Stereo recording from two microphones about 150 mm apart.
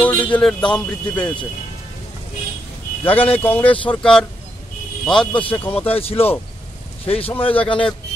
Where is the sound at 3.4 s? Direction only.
10° left (ahead or behind).